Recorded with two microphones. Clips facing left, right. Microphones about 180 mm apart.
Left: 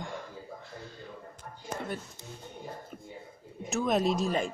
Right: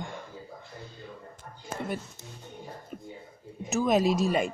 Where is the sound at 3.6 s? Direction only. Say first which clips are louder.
Right 3 dB; 5° right (ahead or behind).